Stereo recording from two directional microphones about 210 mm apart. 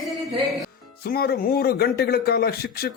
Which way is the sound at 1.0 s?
45° left (ahead or behind).